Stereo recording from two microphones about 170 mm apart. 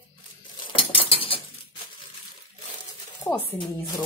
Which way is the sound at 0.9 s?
30° left (ahead or behind).